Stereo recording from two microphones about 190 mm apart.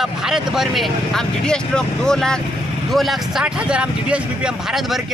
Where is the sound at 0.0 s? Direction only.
5° right (ahead or behind).